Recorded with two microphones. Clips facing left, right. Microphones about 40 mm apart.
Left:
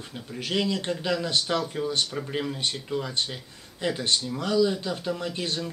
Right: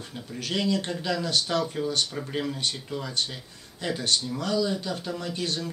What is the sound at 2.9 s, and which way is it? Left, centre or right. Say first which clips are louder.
Speech: left 2 dB; left.